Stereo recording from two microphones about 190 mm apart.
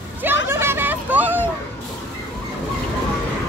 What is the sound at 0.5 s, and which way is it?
Hubbub, 10° right (ahead or behind).